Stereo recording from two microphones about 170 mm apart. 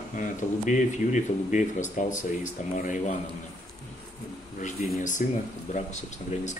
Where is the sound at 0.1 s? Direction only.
45° left (ahead or behind).